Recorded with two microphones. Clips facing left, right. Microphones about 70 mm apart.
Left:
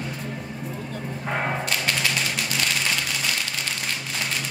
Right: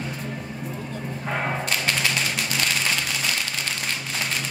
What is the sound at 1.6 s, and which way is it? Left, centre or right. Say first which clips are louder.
Typewriter: even; right.